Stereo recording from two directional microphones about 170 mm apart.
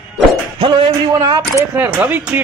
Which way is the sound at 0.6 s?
30° right (ahead or behind).